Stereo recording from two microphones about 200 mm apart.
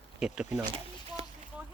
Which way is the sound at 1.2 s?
30° right (ahead or behind).